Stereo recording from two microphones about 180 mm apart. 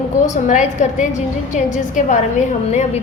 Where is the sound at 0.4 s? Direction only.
45° left (ahead or behind).